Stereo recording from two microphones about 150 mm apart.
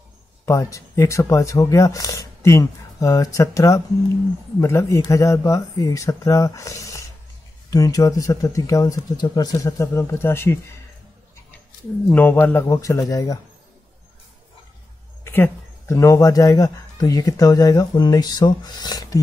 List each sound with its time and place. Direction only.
0.5 s speech: 20° left (ahead or behind)
12.1 s speech: 15° left (ahead or behind)
15.2 s speech: 15° left (ahead or behind)